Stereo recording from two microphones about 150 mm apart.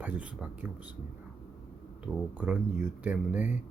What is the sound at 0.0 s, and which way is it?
Speech, 10° right (ahead or behind).